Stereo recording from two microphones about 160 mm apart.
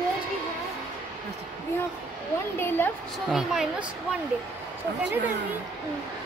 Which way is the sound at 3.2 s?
Centre (ahead or behind).